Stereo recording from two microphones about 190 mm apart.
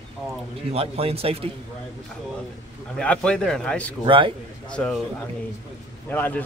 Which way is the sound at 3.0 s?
5° left (ahead or behind).